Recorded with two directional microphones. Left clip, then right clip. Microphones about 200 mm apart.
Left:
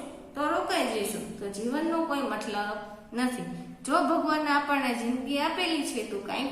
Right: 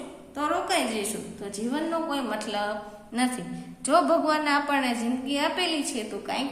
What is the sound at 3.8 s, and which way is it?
A woman's voice, 45° right (ahead or behind).